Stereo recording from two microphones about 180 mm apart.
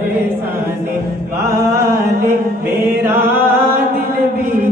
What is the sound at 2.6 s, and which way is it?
Mantra, 10° right (ahead or behind).